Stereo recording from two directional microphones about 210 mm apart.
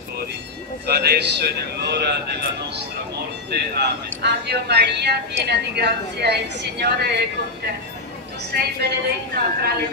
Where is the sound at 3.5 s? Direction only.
50° right (ahead or behind).